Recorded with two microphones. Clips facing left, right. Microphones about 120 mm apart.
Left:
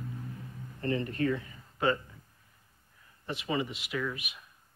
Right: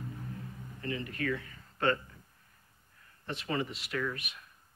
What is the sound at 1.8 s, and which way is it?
Speech, 5° left (ahead or behind).